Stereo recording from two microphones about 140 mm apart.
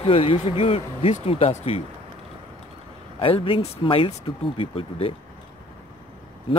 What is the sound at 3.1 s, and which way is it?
Speech, 40° left (ahead or behind).